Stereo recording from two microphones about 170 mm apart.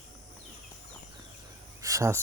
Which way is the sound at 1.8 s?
20° right (ahead or behind).